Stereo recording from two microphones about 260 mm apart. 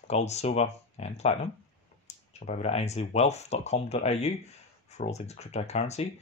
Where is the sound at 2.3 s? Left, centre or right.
Left.